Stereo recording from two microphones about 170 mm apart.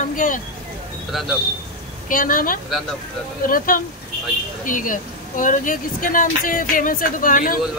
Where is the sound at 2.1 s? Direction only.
55° left (ahead or behind).